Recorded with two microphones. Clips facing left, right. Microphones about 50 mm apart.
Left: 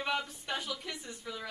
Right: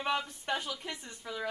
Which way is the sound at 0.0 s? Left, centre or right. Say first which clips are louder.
Right 2 dB; centre.